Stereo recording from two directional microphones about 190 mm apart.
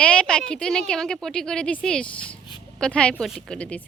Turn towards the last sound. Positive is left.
turn(degrees=5)  # may be behind; listen again after turning